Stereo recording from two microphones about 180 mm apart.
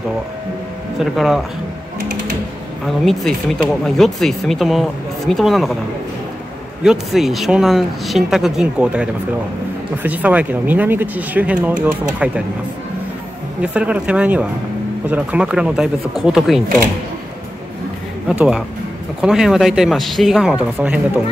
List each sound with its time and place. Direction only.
0.9 s speech: centre (ahead or behind)
3.1 s speech: 5° left (ahead or behind)
6.8 s speech: centre (ahead or behind)
13.6 s speech: 5° right (ahead or behind)
18.3 s speech: 10° right (ahead or behind)